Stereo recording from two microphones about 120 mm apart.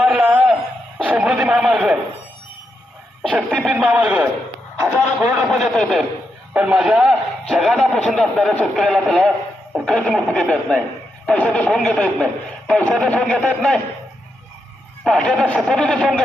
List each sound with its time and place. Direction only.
0.0 s a sound: 10° right (ahead or behind)
3.5 s a man's voice: centre (ahead or behind)
4.8 s speech: 25° right (ahead or behind)
5.5 s a man's voice: centre (ahead or behind)
6.5 s a man's voice: 10° right (ahead or behind)
15.0 s a man's voice: 5° left (ahead or behind)